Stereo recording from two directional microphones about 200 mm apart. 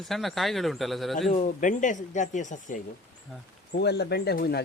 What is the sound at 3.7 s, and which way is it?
Speech, 55° left (ahead or behind).